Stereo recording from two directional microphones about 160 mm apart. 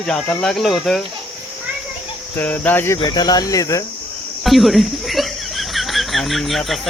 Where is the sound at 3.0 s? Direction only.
25° left (ahead or behind).